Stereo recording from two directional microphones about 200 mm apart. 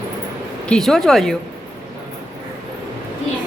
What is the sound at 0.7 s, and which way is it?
Speech, centre (ahead or behind).